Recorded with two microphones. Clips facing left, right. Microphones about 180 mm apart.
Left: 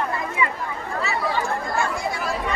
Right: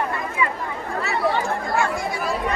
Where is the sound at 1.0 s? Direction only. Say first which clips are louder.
Right 3 dB; 60° right (ahead or behind).